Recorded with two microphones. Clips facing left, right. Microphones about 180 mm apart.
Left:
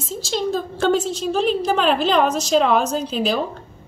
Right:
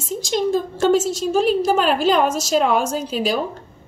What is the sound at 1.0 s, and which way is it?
Speech, 45° right (ahead or behind).